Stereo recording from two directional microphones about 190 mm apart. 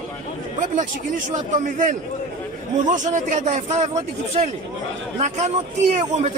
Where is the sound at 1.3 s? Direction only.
40° right (ahead or behind).